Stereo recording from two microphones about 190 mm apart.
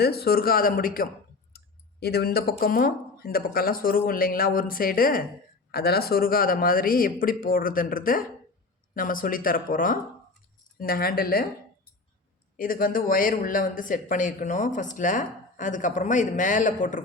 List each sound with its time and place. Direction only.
0.0 s speech: 55° left (ahead or behind)
12.5 s speech: 50° left (ahead or behind)